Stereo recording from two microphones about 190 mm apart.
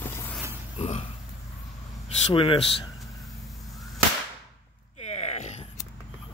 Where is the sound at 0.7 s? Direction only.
35° left (ahead or behind).